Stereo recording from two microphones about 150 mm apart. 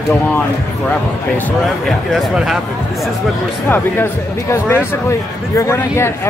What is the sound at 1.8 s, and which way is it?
Speech, centre (ahead or behind).